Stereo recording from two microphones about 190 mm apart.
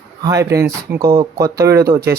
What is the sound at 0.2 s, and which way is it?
Speech, 15° right (ahead or behind).